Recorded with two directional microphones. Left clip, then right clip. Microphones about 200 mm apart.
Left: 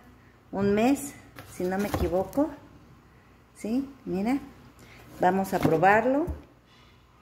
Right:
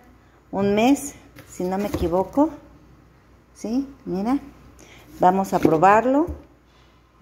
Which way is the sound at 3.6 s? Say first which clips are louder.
Right 4 dB; 15° right (ahead or behind).